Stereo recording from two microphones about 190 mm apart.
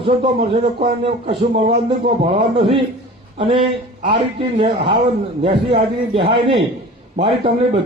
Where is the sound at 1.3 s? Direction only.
65° right (ahead or behind).